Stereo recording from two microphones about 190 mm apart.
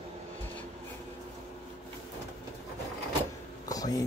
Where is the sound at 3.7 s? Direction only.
20° left (ahead or behind).